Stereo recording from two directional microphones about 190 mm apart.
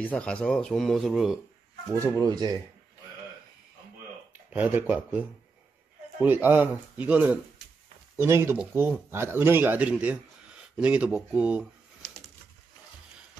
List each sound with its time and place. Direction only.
0.0 s speech: 5° left (ahead or behind); by 2.2 s 10° right (ahead or behind)
2.2 s speech: 20° right (ahead or behind)
4.3 s speech: 10° right (ahead or behind)
6.2 s speech: 10° right (ahead or behind)
12.0 s pigeon: 5° left (ahead or behind)